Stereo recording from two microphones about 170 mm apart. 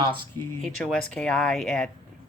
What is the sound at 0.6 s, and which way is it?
Speech, 5° left (ahead or behind).